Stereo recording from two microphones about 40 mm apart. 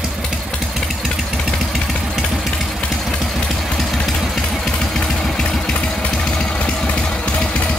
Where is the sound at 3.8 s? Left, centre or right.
Centre.